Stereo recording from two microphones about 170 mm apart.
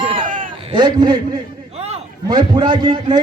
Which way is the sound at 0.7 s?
25° right (ahead or behind).